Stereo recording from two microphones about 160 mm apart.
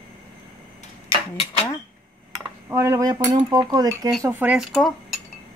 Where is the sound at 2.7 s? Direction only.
20° right (ahead or behind).